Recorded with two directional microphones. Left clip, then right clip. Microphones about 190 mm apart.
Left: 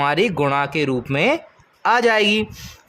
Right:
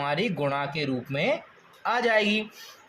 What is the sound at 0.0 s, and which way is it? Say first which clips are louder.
Speech: left 9 dB; 45° left (ahead or behind).